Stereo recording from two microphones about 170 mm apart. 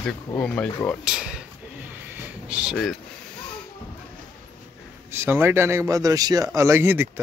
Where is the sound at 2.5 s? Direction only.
Centre (ahead or behind).